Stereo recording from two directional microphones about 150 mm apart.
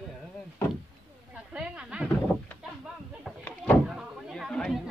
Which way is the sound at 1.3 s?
5° right (ahead or behind).